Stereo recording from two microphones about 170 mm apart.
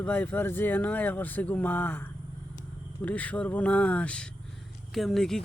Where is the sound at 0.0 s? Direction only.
10° left (ahead or behind).